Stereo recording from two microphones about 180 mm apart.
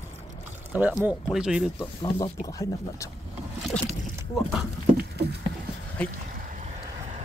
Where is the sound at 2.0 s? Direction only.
20° left (ahead or behind).